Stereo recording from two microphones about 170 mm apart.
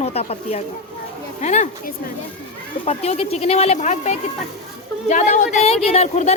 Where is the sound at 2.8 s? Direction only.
35° left (ahead or behind).